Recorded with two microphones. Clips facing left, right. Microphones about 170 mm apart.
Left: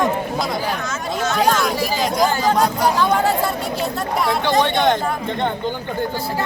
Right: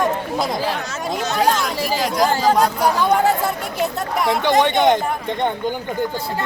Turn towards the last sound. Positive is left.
turn(degrees=-20)  # may be behind; listen again after turning